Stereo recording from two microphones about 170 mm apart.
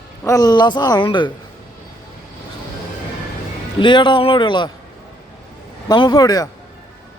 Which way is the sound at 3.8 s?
25° left (ahead or behind).